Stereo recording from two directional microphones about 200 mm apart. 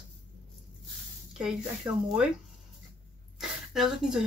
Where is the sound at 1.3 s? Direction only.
5° right (ahead or behind).